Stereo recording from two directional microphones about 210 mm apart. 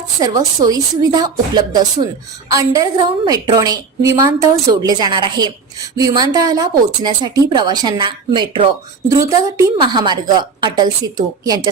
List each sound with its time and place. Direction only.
0.2 s a woman's voice: 15° right (ahead or behind)